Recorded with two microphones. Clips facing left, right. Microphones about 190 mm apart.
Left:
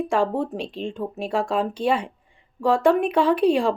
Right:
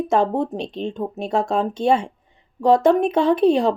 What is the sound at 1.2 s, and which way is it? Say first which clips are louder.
Speech: right 2 dB; 25° right (ahead or behind).